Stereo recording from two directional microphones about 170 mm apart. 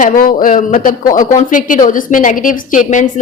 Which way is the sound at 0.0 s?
55° left (ahead or behind).